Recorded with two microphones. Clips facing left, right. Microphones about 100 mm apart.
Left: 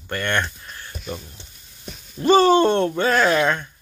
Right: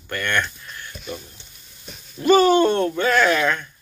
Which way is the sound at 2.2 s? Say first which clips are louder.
Even; 30° left (ahead or behind).